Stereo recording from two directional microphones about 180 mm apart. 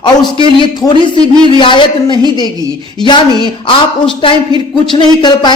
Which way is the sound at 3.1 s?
25° left (ahead or behind).